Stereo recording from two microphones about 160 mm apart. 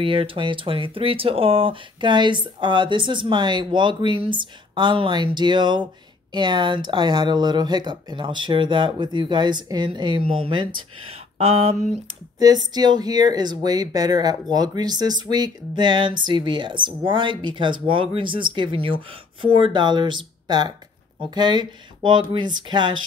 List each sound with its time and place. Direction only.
0.0 s speech: 35° right (ahead or behind)
12.4 s speech: 25° right (ahead or behind)